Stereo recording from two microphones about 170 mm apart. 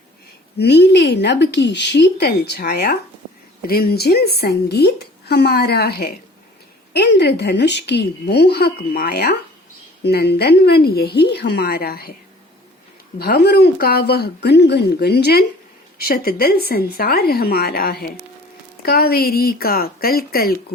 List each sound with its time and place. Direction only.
0.6 s a woman's voice: 80° left
6.9 s a woman's voice: 80° left; by 12.1 s 65° left (ahead or behind)
13.1 s a woman's voice: 70° left (ahead or behind)
16.0 s a woman's voice: 60° left (ahead or behind)